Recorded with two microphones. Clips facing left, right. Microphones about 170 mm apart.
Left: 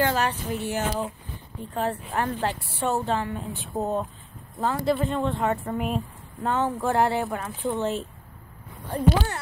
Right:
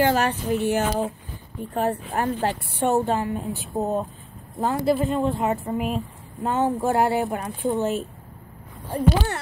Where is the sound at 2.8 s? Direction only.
45° right (ahead or behind).